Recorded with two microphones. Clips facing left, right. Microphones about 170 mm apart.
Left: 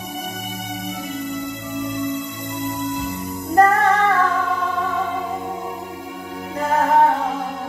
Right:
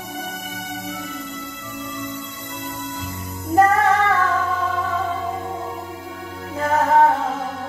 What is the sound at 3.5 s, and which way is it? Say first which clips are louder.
Music: even; centre (ahead or behind).